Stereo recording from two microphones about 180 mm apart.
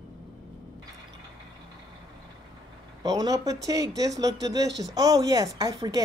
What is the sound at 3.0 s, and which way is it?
Speech, 20° right (ahead or behind).